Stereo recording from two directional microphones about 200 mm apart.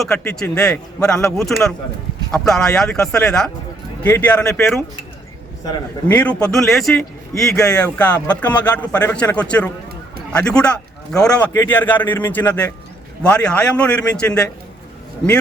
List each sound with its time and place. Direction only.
0.0 s a man's voice: 5° left (ahead or behind)
5.6 s a man's voice: 15° left (ahead or behind)